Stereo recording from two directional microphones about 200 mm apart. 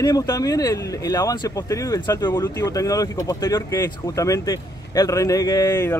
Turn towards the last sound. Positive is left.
turn(degrees=15)  # may be behind; listen again after turning